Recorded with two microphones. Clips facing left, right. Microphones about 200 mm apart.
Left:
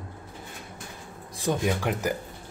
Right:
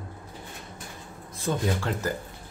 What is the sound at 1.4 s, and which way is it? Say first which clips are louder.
Speech: left 2 dB; 15° left (ahead or behind).